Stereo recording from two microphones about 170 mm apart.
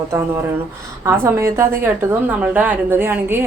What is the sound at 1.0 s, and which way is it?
Speech, 15° right (ahead or behind).